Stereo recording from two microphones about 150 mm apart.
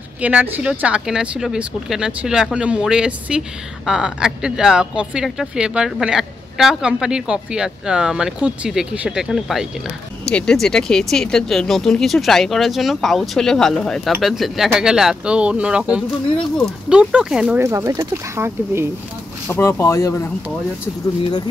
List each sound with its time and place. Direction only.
0.2 s speech: 10° right (ahead or behind)
17.6 s speech: 20° right (ahead or behind)
19.4 s speech: 15° left (ahead or behind)